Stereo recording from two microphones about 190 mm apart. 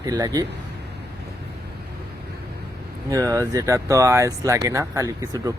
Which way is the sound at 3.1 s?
15° right (ahead or behind).